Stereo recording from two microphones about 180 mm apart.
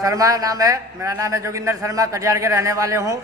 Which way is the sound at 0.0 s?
20° right (ahead or behind).